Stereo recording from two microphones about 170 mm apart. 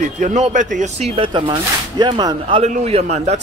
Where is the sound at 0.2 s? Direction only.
45° right (ahead or behind).